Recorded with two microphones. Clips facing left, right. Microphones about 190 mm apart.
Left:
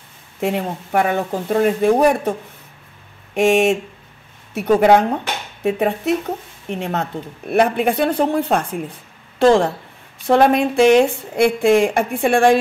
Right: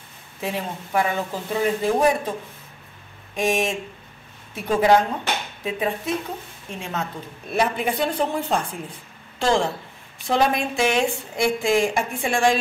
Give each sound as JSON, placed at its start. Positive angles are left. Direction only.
{"t": 0.4, "sound": "speech", "side_deg": 60}
{"t": 3.3, "sound": "speech", "side_deg": 65}
{"t": 4.7, "sound": "speech", "side_deg": 65}